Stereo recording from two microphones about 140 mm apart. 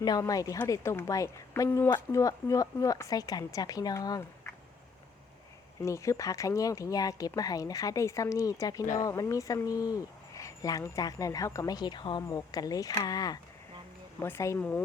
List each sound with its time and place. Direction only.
0.0 s speech: 25° left (ahead or behind)
5.8 s speech: 20° left (ahead or behind)
14.2 s speech: 20° left (ahead or behind)